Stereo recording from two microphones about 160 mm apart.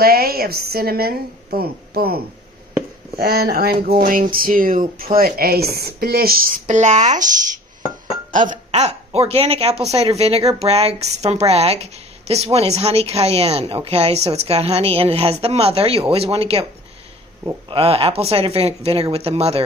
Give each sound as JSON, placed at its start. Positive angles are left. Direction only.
{"t": 0.0, "sound": "a woman's voice", "side_deg": -70}
{"t": 4.0, "sound": "a sound", "side_deg": -65}
{"t": 5.1, "sound": "a woman's voice", "side_deg": -65}
{"t": 8.3, "sound": "a woman's voice", "side_deg": -55}
{"t": 17.6, "sound": "a woman's voice", "side_deg": -35}